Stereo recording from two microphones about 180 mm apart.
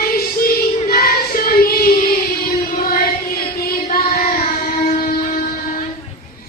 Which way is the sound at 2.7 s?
50° left (ahead or behind).